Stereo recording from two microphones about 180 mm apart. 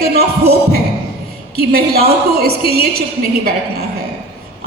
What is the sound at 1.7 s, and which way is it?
A woman's voice, 60° right (ahead or behind).